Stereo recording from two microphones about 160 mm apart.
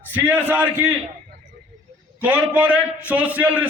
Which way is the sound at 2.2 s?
10° right (ahead or behind).